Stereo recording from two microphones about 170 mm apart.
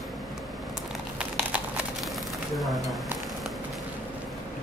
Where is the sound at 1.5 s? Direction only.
5° right (ahead or behind).